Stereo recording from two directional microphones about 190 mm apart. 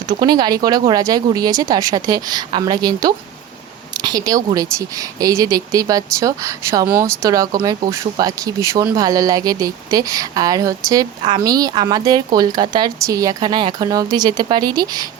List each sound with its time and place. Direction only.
0.2 s speech: 20° right (ahead or behind)